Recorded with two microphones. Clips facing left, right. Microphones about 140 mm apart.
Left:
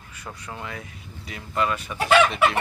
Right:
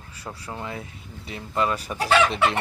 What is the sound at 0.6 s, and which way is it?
Chicken, 30° right (ahead or behind).